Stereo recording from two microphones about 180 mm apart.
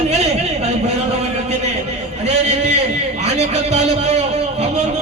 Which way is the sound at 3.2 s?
35° right (ahead or behind).